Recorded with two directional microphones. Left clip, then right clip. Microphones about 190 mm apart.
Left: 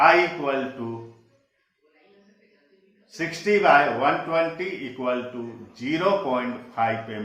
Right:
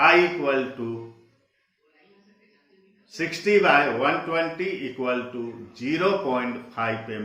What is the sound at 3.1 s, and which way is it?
A man's voice, 15° right (ahead or behind).